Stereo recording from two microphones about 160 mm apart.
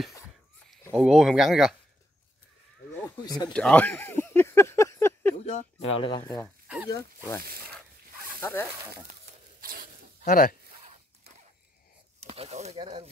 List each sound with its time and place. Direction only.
0.9 s speech: centre (ahead or behind)
3.2 s speech: 30° left (ahead or behind)
3.4 s a sound: 5° left (ahead or behind)
5.4 s speech: 45° left (ahead or behind)
5.9 s speech: 30° left (ahead or behind)
6.2 s speech: 20° left (ahead or behind)
8.4 s speech: 15° left (ahead or behind)
9.6 s a sound: 65° right (ahead or behind)
10.2 s speech: 65° left (ahead or behind)
12.3 s speech: 45° right (ahead or behind)